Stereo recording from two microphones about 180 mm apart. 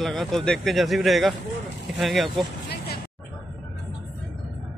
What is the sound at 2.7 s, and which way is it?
Music, 65° left (ahead or behind).